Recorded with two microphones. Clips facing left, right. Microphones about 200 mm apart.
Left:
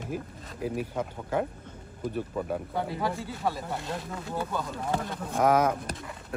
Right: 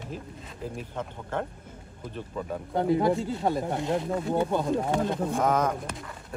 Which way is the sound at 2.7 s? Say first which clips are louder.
Right 13 dB; 20° right (ahead or behind).